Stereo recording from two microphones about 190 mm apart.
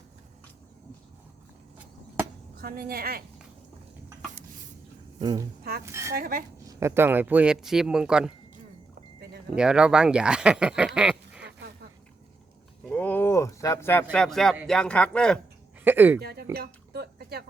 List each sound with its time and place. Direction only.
2.6 s a woman's voice: 50° right (ahead or behind)
5.2 s speech: 20° right (ahead or behind)
6.1 s a woman's voice: 50° right (ahead or behind)
6.6 s speech: 15° right (ahead or behind)
9.6 s speech: 5° right (ahead or behind)
11.4 s a sound: 60° right (ahead or behind)
12.9 s speech: 10° left (ahead or behind)
15.8 s speech: 10° right (ahead or behind)
16.2 s a sound: 55° right (ahead or behind)